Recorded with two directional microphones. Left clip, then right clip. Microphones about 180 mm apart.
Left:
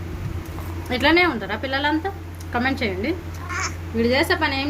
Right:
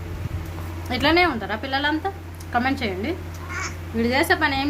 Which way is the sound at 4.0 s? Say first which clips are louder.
Even; 25° right (ahead or behind).